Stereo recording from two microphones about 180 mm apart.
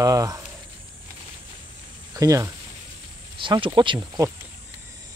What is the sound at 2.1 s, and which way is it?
Speech, 20° right (ahead or behind).